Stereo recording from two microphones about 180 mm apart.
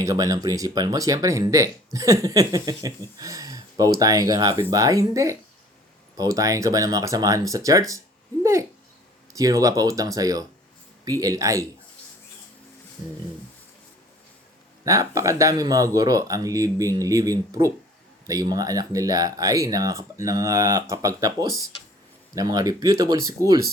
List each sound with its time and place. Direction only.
0.0 s speech: 20° right (ahead or behind)
9.3 s speech: 20° right (ahead or behind)
14.8 s speech: 15° right (ahead or behind)